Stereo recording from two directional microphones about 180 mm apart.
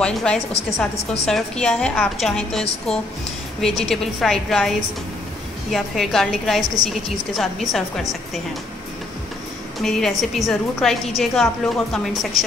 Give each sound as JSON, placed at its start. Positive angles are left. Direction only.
{"t": 0.0, "sound": "a woman's voice", "side_deg": 5}
{"t": 9.8, "sound": "a woman's voice", "side_deg": 0}